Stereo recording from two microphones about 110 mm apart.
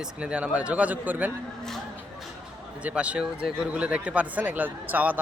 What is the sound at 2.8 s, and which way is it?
Speech, 10° right (ahead or behind).